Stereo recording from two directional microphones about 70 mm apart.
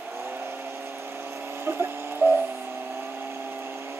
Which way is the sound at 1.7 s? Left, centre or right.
Right.